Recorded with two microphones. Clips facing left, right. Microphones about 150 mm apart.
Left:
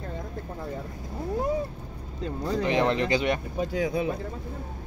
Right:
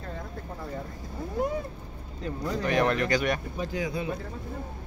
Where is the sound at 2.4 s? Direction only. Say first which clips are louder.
Left 1 dB; 20° left (ahead or behind).